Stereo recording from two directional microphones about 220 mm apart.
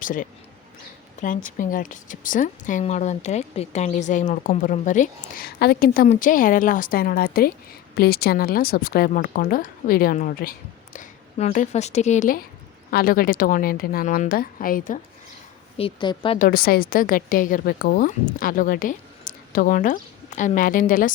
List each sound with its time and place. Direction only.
0.0 s a woman's voice: 40° left (ahead or behind)
15.8 s a woman's voice: 20° left (ahead or behind)
16.4 s a woman's voice: 45° left (ahead or behind)